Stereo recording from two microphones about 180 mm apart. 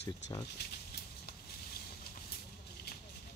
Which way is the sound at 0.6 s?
60° left (ahead or behind).